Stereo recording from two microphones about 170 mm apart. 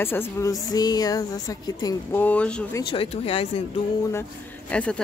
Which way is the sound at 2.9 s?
35° left (ahead or behind).